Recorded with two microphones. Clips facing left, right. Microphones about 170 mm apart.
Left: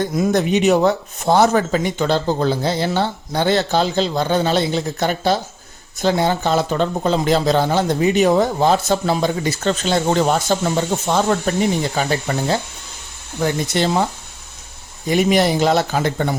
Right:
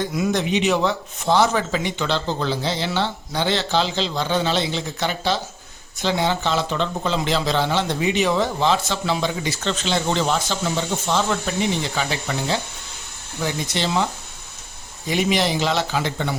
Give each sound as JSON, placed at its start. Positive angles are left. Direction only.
{"t": 0.0, "sound": "speech", "side_deg": 45}